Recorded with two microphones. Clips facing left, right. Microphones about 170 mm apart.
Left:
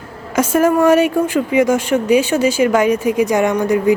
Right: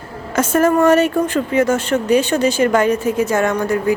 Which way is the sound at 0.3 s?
10° left (ahead or behind).